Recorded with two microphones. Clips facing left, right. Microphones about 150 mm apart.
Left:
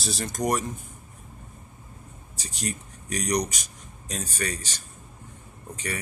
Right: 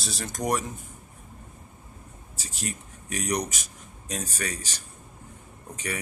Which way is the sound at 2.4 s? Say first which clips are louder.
Left 2 dB; 5° right (ahead or behind).